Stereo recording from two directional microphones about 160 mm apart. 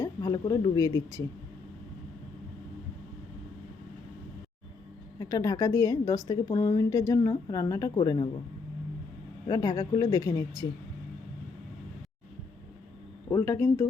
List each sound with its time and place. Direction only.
0.0 s speech: 20° left (ahead or behind)
5.2 s a woman's voice: 25° left (ahead or behind)
9.5 s a woman's voice: 20° left (ahead or behind)
13.3 s speech: 20° left (ahead or behind)